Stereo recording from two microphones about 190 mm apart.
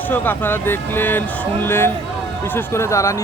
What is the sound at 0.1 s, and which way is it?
Speech, 10° left (ahead or behind).